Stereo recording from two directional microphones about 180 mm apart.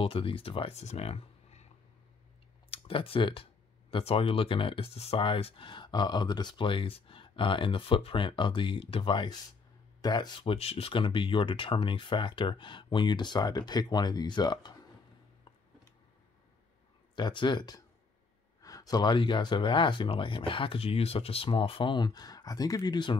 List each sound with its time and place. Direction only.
0.0 s speech: 30° left (ahead or behind)
2.7 s speech: 30° left (ahead or behind)
17.1 s speech: 25° left (ahead or behind)